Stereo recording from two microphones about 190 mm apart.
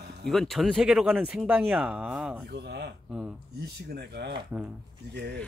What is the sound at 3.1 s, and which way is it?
Speech, 5° right (ahead or behind).